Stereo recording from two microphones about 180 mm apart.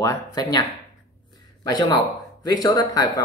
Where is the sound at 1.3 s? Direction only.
20° left (ahead or behind).